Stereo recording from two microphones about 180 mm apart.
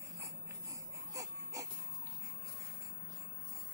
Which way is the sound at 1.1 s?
20° right (ahead or behind).